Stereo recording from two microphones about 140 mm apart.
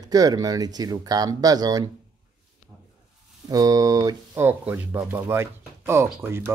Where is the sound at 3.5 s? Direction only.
25° right (ahead or behind).